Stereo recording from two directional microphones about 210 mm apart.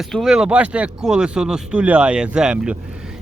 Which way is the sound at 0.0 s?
Centre (ahead or behind).